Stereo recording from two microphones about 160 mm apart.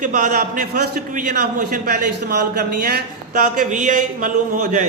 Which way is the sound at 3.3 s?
50° right (ahead or behind).